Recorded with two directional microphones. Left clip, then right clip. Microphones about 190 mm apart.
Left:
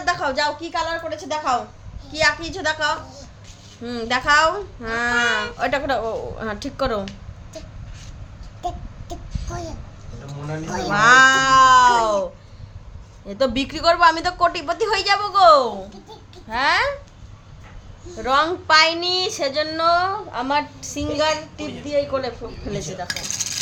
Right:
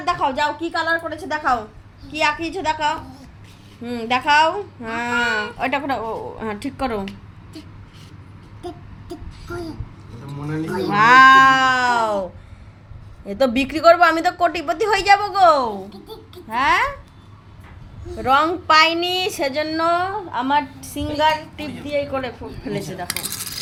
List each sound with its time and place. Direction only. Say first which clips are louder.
0.0 s a woman's voice: right 1 dB; centre (ahead or behind)
4.3 s a child's voice: right 1 dB; 5° left (ahead or behind)
8.6 s a sound: left 5 dB; 35° left (ahead or behind)
10.7 s speech: right 1 dB; 45° left (ahead or behind)
10.9 s a woman's voice: right 3 dB; 5° right (ahead or behind)
13.2 s a woman's voice: right 2 dB; 15° right (ahead or behind)
18.2 s a woman's voice: right 2 dB; 15° right (ahead or behind)